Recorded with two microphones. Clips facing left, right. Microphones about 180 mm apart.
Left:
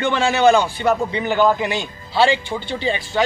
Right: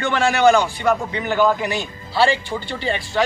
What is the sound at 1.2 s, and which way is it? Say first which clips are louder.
Speech: left 1 dB; centre (ahead or behind).